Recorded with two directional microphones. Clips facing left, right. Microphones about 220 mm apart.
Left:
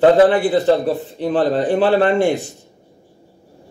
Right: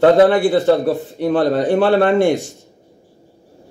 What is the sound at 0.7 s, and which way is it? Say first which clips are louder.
A man's voice: right 1 dB; 60° right (ahead or behind).